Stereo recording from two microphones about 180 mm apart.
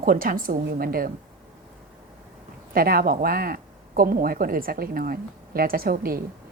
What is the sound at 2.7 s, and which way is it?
Speech, 55° right (ahead or behind).